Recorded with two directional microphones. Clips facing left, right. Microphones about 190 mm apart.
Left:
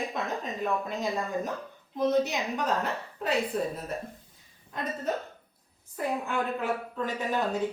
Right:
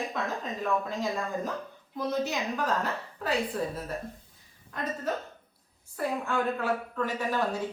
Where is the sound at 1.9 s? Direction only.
20° left (ahead or behind).